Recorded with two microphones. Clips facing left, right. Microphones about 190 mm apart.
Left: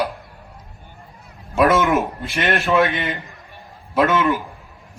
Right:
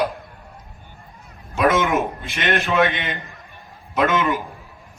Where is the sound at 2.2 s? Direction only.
Centre (ahead or behind).